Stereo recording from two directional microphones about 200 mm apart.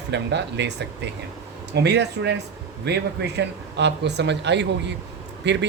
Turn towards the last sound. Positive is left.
turn(degrees=-60)  # may be behind; listen again after turning